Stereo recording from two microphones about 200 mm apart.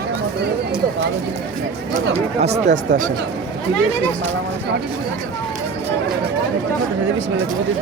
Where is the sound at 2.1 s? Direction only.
35° right (ahead or behind).